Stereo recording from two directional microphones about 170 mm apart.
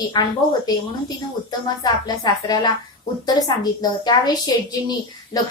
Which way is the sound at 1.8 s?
25° left (ahead or behind).